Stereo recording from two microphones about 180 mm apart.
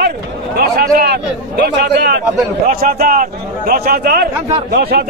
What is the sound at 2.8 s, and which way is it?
Speech, 50° right (ahead or behind).